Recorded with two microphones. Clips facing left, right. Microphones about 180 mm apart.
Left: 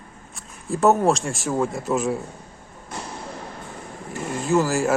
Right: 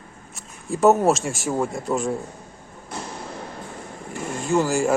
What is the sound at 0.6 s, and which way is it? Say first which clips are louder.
Speech: right 1 dB; centre (ahead or behind).